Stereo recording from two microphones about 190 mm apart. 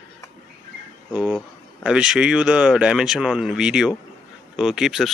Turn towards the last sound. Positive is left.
turn(degrees=0)  # may be behind; listen again after turning